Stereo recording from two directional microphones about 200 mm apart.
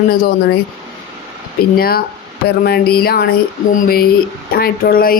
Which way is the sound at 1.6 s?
50° left (ahead or behind).